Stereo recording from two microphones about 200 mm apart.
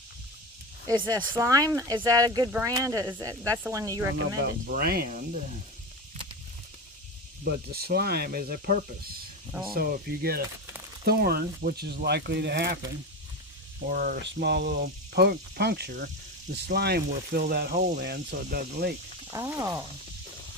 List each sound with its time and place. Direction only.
0.9 s speech: 15° right (ahead or behind)
4.7 s speech: 45° right (ahead or behind)
7.4 s speech: 50° right (ahead or behind)
13.9 s speech: 50° right (ahead or behind)
19.3 s speech: 15° right (ahead or behind)